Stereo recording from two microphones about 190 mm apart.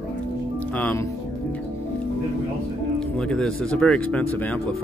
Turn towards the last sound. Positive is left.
turn(degrees=5)  # may be behind; listen again after turning